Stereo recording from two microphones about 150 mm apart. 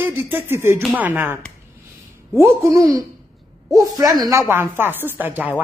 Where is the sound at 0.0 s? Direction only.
15° right (ahead or behind).